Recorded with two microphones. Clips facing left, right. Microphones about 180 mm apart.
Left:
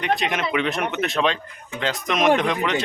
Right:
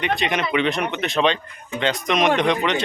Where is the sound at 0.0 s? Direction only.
Centre (ahead or behind).